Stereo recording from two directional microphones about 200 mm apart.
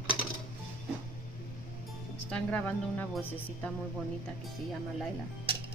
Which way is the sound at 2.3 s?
5° left (ahead or behind).